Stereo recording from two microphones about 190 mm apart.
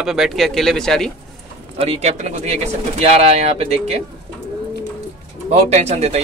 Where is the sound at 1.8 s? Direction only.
35° right (ahead or behind).